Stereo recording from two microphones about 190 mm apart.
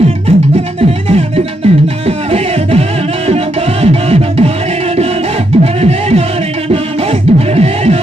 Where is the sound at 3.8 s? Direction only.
30° right (ahead or behind).